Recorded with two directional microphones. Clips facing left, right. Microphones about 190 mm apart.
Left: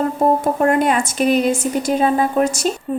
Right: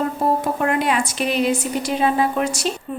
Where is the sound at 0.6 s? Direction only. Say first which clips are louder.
Left 4 dB; 45° left (ahead or behind).